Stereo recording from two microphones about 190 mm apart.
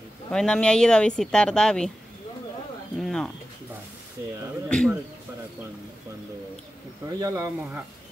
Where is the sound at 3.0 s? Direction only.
5° left (ahead or behind).